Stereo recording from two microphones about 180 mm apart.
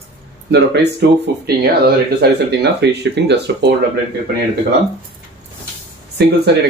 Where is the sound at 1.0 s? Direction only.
70° right (ahead or behind).